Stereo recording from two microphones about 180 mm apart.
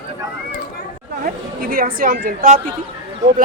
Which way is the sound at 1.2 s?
55° right (ahead or behind).